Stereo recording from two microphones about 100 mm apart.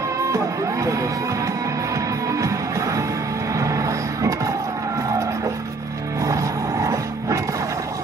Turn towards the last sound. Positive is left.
turn(degrees=-35)  # may be behind; listen again after turning